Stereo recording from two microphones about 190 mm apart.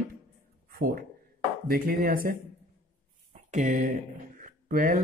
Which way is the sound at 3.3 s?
40° right (ahead or behind).